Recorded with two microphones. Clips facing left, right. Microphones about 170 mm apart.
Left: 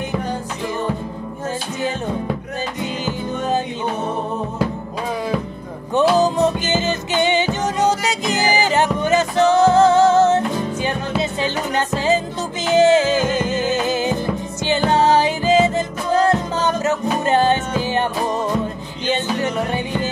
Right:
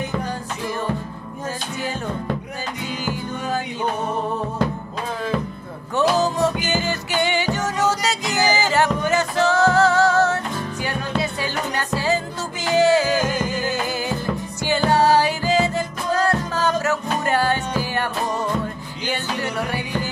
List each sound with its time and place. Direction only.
2.8 s music: 20° left (ahead or behind)
5.9 s music: 15° left (ahead or behind)
19.0 s music: 20° left (ahead or behind)